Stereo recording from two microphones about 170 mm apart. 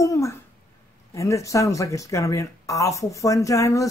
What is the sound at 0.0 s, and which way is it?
A woman's voice, 20° left (ahead or behind).